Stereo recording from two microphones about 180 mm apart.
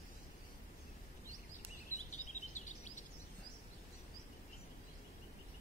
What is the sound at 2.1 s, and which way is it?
Bird vocalization, 40° left (ahead or behind).